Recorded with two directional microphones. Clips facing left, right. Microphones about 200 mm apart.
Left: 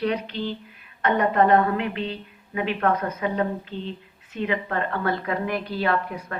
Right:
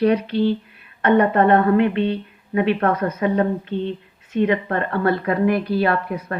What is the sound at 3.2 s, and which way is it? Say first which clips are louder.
A woman's voice: right 8 dB; 55° right (ahead or behind).